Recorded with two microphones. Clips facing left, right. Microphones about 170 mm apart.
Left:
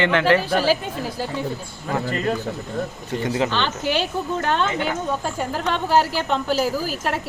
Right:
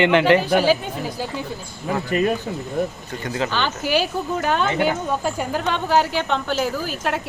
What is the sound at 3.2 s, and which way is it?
Speech, 25° left (ahead or behind).